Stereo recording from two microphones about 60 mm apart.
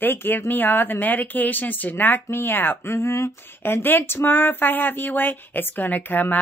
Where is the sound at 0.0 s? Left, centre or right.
Left.